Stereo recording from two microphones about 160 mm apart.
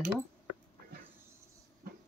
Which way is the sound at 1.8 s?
70° right (ahead or behind).